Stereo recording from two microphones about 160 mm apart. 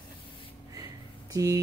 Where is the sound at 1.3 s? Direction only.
20° right (ahead or behind).